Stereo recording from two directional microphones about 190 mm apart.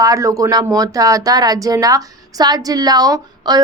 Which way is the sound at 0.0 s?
15° right (ahead or behind).